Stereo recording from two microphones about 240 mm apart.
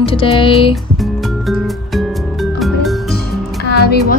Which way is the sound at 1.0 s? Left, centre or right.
Centre.